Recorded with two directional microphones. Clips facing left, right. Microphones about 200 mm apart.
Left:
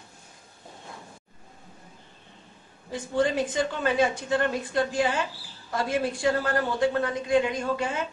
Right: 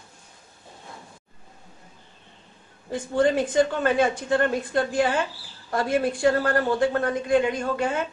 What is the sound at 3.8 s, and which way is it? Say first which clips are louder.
A man's voice: right 2 dB; 55° right (ahead or behind).